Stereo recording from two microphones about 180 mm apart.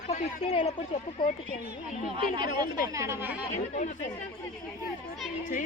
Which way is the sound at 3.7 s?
45° left (ahead or behind).